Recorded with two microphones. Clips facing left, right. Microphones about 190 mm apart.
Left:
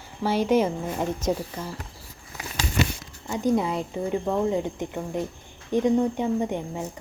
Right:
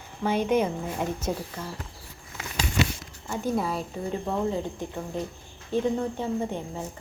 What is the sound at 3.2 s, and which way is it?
A woman's voice, 15° left (ahead or behind).